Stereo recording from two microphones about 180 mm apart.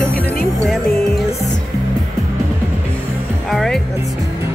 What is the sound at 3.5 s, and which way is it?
Speech, centre (ahead or behind).